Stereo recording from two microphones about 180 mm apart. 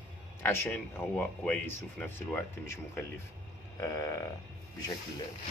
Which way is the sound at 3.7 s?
15° left (ahead or behind).